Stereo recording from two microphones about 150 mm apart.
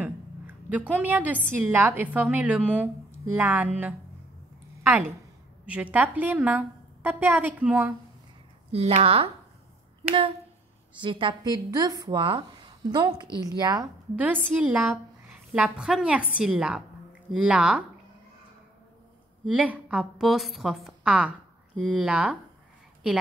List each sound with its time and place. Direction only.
0.0 s a sound: 10° right (ahead or behind)
1.6 s a woman's voice: 15° right (ahead or behind)
5.7 s a woman's voice: 10° right (ahead or behind)
8.7 s speech: 40° right (ahead or behind)
11.0 s speech: 35° right (ahead or behind)
14.1 s a woman's voice: 10° right (ahead or behind)
19.4 s a woman's voice: 10° right (ahead or behind)